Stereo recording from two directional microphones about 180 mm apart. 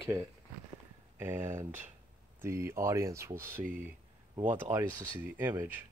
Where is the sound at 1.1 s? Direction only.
15° right (ahead or behind).